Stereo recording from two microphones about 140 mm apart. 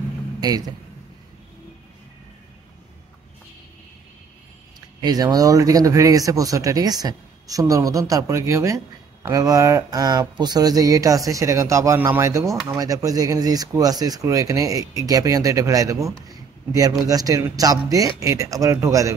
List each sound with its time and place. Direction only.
0.4 s a man's voice: 25° right (ahead or behind)
5.0 s speech: 25° right (ahead or behind)
16.3 s a sound: 25° right (ahead or behind)
17.0 s speech: 25° right (ahead or behind)